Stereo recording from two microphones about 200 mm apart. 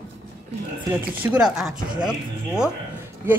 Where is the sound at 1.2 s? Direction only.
5° right (ahead or behind).